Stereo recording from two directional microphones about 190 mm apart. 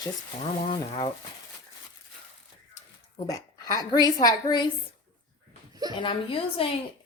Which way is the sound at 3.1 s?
20° left (ahead or behind).